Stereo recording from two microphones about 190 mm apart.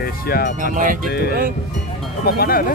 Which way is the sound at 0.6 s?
45° right (ahead or behind).